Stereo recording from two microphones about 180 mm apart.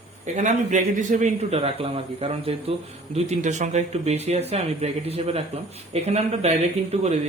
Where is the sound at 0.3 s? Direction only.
40° right (ahead or behind).